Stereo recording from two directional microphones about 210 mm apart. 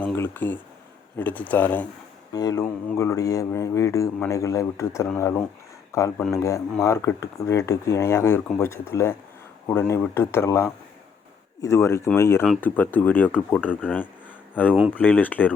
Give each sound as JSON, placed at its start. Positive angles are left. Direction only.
{"t": 0.0, "sound": "speech", "side_deg": 10}